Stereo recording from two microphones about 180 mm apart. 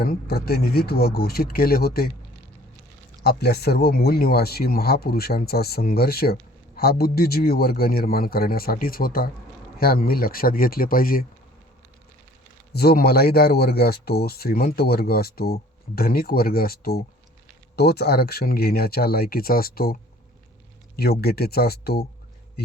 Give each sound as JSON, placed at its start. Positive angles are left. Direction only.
{"t": 0.0, "sound": "speech", "side_deg": 55}
{"t": 3.2, "sound": "speech", "side_deg": 60}
{"t": 12.7, "sound": "speech", "side_deg": 60}